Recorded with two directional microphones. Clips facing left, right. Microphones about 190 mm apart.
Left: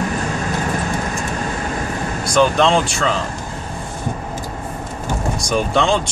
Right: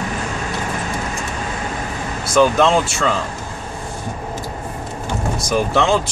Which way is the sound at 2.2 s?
5° right (ahead or behind).